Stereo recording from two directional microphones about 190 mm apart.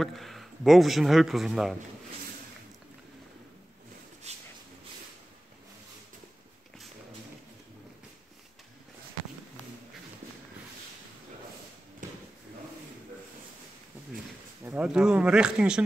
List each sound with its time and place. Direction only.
0.0 s speech: centre (ahead or behind)
4.2 s a sound: 35° right (ahead or behind)
14.1 s speech: 10° right (ahead or behind)